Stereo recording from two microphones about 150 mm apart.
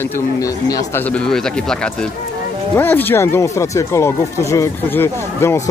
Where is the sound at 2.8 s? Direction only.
15° left (ahead or behind).